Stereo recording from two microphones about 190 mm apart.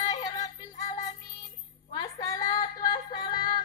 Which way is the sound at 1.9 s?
20° left (ahead or behind).